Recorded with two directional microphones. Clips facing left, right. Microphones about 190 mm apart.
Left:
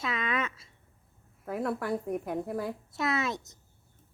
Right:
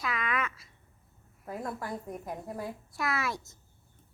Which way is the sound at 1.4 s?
65° left (ahead or behind).